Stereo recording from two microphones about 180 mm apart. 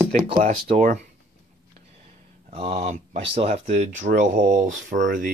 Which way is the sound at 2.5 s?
35° right (ahead or behind).